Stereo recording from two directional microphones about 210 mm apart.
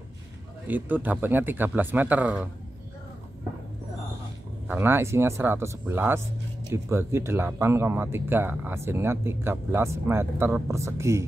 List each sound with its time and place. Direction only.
0.7 s speech: 10° right (ahead or behind)
4.6 s speech: 10° right (ahead or behind)